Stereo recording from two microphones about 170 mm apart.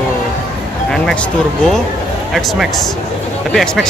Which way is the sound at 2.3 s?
Centre (ahead or behind).